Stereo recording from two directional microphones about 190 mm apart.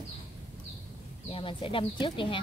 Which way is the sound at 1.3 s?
25° left (ahead or behind).